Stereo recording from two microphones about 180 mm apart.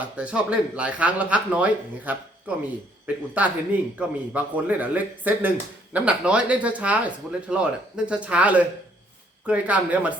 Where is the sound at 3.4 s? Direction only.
10° right (ahead or behind).